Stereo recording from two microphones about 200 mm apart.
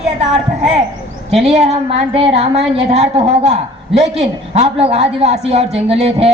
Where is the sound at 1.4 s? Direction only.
30° right (ahead or behind).